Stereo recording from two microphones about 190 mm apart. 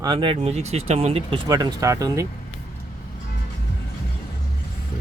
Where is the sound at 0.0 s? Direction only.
25° right (ahead or behind).